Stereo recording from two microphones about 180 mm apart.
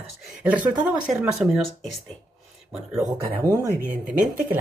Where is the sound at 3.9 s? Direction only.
50° right (ahead or behind).